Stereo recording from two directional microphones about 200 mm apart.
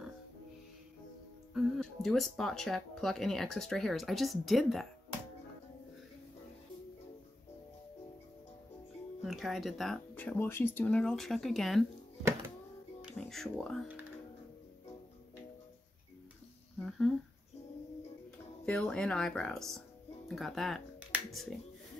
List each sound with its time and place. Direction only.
1.5 s speech: centre (ahead or behind)
9.2 s speech: centre (ahead or behind)
13.0 s speech: centre (ahead or behind)
18.7 s speech: 5° left (ahead or behind)